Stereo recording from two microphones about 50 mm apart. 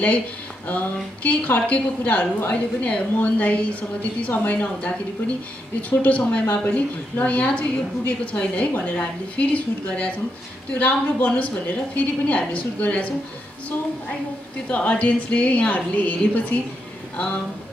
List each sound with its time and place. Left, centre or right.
1.2 s a woman's voice: left
14.7 s a woman's voice: left